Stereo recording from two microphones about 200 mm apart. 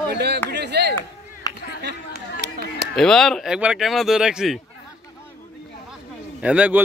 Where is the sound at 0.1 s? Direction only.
55° right (ahead or behind).